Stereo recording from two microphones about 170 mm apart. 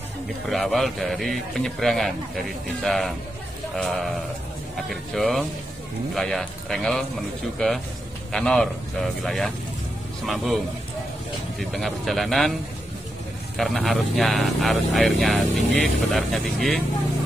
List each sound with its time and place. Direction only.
0.5 s speech: centre (ahead or behind)
11.7 s speech: centre (ahead or behind)
13.6 s speech: centre (ahead or behind)